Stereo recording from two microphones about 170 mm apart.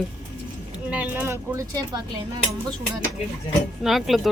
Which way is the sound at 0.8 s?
10° right (ahead or behind).